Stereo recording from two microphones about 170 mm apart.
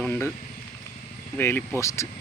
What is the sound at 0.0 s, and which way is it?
Speech, 10° left (ahead or behind).